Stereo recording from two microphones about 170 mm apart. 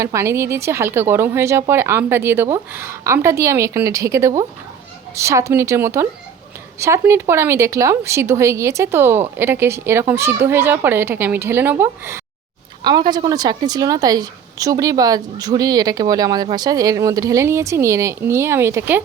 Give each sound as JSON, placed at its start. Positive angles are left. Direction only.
{"t": 0.0, "sound": "speech", "side_deg": -15}
{"t": 12.8, "sound": "a woman's voice", "side_deg": -25}